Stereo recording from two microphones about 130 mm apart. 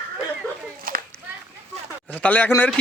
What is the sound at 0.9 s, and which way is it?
Children playing, 90° right.